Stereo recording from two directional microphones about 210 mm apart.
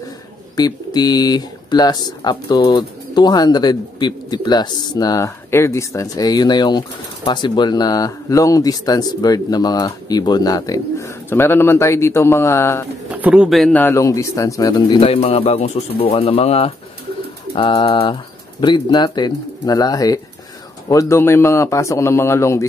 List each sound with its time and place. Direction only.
0.6 s speech: 20° left (ahead or behind)
13.1 s speech: 5° right (ahead or behind); by 22.7 s 15° left (ahead or behind)